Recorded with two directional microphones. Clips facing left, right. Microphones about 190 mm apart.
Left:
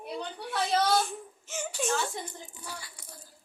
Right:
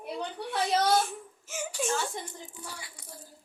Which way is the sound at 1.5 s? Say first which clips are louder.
Even; 10° right (ahead or behind).